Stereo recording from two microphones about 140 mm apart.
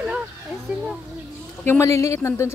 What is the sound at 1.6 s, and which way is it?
Speech, 20° left (ahead or behind).